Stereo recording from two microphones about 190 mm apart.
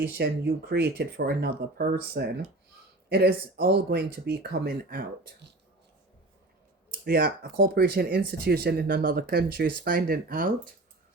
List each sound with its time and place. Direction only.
0.2 s speech: 55° right (ahead or behind)
3.1 s speech: 55° right (ahead or behind)
7.0 s speech: 55° right (ahead or behind)